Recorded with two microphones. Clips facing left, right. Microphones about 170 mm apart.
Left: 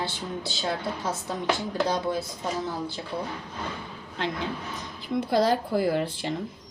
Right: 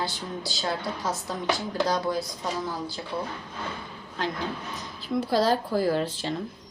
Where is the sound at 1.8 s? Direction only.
25° left (ahead or behind).